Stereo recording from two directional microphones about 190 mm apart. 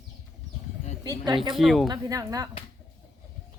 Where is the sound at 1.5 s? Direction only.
Centre (ahead or behind).